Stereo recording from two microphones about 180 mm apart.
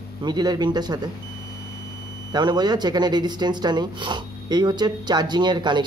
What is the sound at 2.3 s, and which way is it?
Speech, 25° right (ahead or behind).